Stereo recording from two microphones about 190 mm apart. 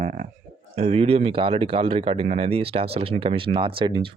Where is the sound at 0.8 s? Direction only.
35° right (ahead or behind).